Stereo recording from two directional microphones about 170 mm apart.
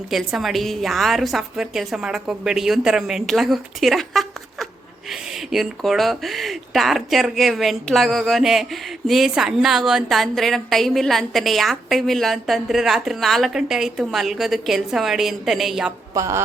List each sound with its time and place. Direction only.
0.1 s speech: centre (ahead or behind)
16.1 s a woman's voice: 20° right (ahead or behind)